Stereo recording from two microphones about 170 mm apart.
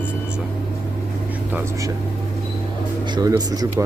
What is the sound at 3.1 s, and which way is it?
Speech, 20° right (ahead or behind).